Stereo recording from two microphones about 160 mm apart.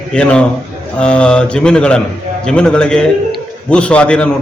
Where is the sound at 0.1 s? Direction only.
5° left (ahead or behind).